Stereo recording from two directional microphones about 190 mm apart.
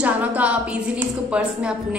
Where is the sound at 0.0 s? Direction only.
10° right (ahead or behind).